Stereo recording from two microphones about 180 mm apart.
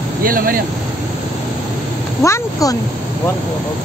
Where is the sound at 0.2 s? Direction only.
50° right (ahead or behind).